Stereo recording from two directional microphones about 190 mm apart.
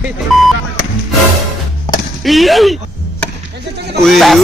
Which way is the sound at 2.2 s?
Centre (ahead or behind).